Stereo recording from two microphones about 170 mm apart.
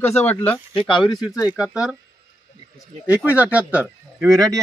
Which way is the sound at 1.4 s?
5° right (ahead or behind).